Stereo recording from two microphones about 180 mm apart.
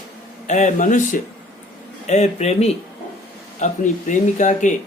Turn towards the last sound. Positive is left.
turn(degrees=45)  # may be behind; listen again after turning